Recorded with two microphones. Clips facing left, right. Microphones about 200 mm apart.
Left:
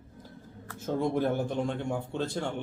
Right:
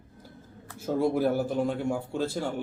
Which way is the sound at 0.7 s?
10° right (ahead or behind).